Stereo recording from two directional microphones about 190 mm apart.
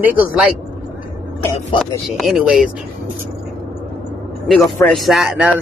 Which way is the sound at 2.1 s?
Centre (ahead or behind).